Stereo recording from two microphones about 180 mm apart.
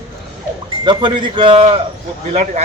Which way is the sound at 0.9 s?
25° right (ahead or behind).